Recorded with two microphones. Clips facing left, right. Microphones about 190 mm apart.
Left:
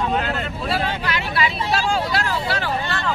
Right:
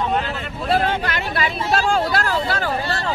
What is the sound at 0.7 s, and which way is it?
Vehicle, 50° right (ahead or behind).